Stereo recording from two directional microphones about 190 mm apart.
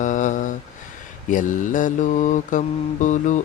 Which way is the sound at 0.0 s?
40° left (ahead or behind).